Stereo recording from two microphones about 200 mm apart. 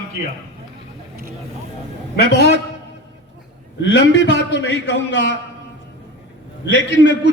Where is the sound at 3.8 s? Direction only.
60° left (ahead or behind).